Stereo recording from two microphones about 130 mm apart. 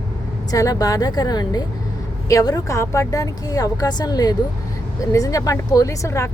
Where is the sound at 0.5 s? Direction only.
25° left (ahead or behind).